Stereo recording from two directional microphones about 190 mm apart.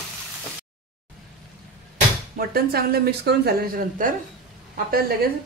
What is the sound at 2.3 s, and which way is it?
A woman's voice, 55° right (ahead or behind).